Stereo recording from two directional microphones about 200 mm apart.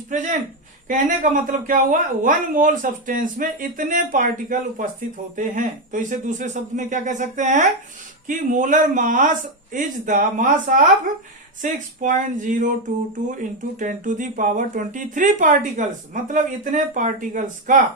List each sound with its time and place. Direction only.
0.9 s a woman's voice: 40° right (ahead or behind)